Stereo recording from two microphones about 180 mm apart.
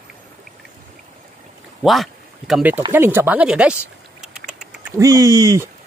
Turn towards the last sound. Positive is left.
turn(degrees=-20)  # may be behind; listen again after turning